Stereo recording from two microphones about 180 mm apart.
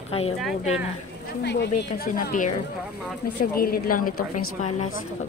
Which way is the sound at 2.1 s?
45° left (ahead or behind).